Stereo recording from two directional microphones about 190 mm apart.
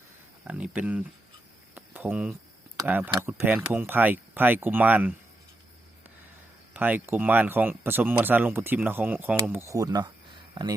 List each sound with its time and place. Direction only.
0.4 s speech: 5° right (ahead or behind)
1.7 s a sound: 10° right (ahead or behind)
2.7 s speech: 10° right (ahead or behind)
6.7 s speech: 10° right (ahead or behind)